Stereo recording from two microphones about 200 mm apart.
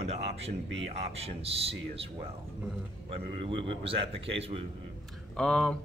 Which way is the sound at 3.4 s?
30° right (ahead or behind).